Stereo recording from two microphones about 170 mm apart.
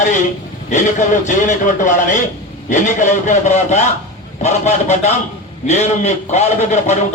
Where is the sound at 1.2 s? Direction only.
45° left (ahead or behind).